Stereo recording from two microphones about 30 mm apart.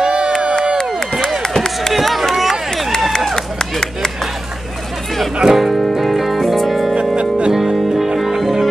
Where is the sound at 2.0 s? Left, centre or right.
Centre.